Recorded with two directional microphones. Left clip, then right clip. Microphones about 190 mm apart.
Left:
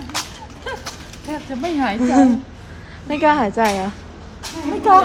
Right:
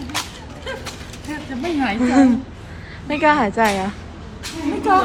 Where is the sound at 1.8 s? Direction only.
10° left (ahead or behind).